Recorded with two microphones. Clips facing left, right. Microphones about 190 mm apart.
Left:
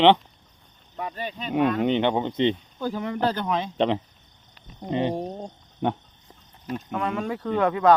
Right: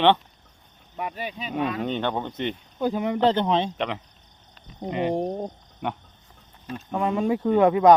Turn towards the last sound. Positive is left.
turn(degrees=-20)  # may be behind; listen again after turning